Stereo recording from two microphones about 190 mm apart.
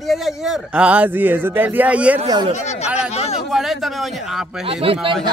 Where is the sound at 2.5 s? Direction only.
35° left (ahead or behind).